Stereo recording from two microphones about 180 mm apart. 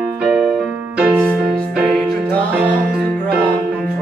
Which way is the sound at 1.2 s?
5° left (ahead or behind).